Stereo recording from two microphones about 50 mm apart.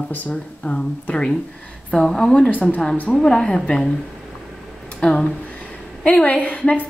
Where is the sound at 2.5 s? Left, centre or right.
Left.